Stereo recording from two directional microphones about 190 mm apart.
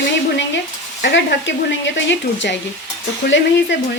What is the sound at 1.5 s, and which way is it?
Speech, 75° left (ahead or behind).